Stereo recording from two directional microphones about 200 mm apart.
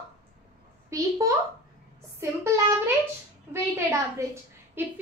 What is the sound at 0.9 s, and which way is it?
Speech, 15° right (ahead or behind).